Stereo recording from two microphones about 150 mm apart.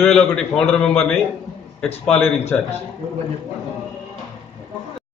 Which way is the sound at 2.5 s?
5° left (ahead or behind).